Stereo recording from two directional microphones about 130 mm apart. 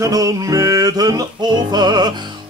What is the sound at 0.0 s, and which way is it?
Music, 25° right (ahead or behind).